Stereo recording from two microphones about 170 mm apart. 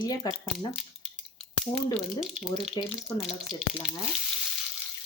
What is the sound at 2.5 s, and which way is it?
Speech, 25° left (ahead or behind).